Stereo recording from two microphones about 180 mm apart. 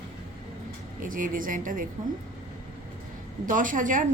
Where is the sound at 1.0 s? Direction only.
50° right (ahead or behind).